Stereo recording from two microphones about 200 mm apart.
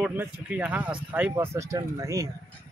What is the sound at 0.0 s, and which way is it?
Speech, 10° right (ahead or behind).